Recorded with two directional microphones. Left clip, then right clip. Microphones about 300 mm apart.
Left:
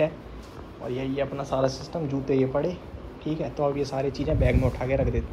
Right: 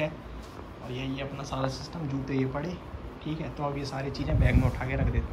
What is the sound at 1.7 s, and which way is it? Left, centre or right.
Speech, centre.